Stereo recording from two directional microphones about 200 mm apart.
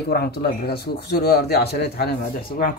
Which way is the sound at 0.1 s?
50° left (ahead or behind).